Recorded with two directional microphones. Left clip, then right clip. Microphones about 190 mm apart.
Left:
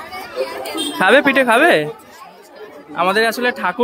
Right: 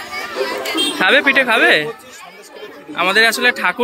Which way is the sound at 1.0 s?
30° left (ahead or behind).